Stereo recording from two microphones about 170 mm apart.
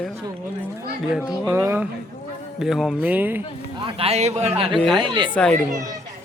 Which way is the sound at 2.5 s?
Centre (ahead or behind).